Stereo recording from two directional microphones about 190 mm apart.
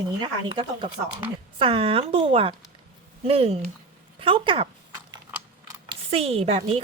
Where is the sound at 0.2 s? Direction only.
25° right (ahead or behind).